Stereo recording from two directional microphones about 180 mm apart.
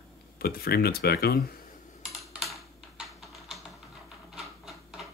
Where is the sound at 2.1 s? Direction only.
Centre (ahead or behind).